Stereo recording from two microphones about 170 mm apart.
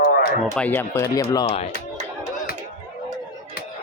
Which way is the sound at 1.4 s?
35° left (ahead or behind).